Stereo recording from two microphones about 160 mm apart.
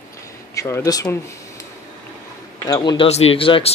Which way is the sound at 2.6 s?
25° left (ahead or behind).